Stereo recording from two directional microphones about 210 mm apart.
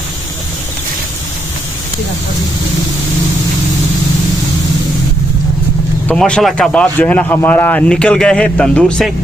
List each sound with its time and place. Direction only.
6.0 s speech: 5° left (ahead or behind)